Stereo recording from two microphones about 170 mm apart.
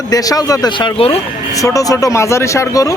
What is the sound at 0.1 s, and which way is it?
Speech, 20° left (ahead or behind).